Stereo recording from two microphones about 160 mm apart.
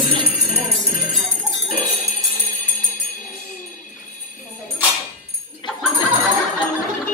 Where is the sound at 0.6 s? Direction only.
60° left (ahead or behind).